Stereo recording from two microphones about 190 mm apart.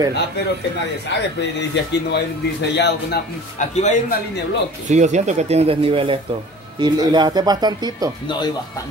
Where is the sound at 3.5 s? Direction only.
40° left (ahead or behind).